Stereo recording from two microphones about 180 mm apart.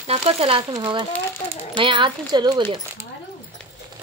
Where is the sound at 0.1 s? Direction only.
35° right (ahead or behind).